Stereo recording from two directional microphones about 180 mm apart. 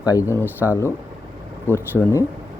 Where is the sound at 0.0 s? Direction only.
20° left (ahead or behind).